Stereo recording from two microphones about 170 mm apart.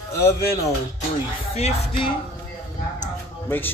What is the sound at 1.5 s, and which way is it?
Music, 40° left (ahead or behind).